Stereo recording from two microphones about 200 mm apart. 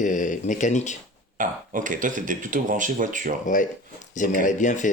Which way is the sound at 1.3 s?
40° right (ahead or behind).